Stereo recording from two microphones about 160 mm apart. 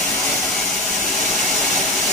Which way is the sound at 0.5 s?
Centre (ahead or behind).